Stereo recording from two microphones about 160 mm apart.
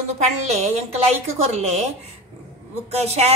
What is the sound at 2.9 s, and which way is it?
Speech, 40° right (ahead or behind).